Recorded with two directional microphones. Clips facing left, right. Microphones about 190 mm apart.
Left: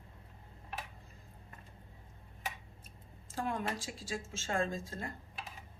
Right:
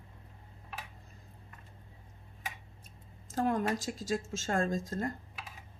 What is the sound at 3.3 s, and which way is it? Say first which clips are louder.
A woman's voice: right 6 dB; 40° right (ahead or behind).